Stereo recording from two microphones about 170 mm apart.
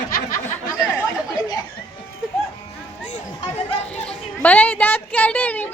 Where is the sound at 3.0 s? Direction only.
40° left (ahead or behind).